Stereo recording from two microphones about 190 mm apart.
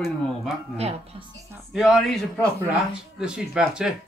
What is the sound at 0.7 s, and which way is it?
Speech, 30° right (ahead or behind).